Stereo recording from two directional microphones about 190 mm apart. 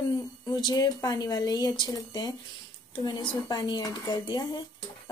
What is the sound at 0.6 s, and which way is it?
Speech, 20° left (ahead or behind).